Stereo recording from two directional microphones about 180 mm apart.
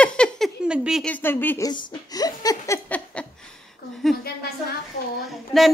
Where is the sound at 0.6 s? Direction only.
5° right (ahead or behind); by 1.7 s 15° left (ahead or behind).